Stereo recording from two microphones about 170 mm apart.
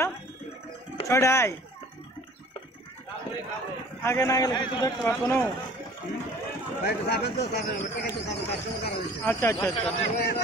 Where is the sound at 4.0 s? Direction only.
15° left (ahead or behind).